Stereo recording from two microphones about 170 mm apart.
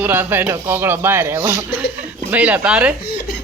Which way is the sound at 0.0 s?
10° right (ahead or behind).